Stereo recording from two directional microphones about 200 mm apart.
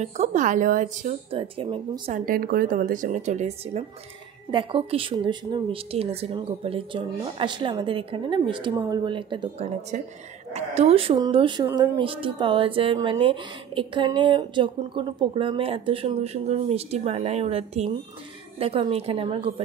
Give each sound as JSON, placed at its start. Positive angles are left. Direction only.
{"t": 0.0, "sound": "speech", "side_deg": -35}
{"t": 1.4, "sound": "speech", "side_deg": -25}
{"t": 2.1, "sound": "speech", "side_deg": -45}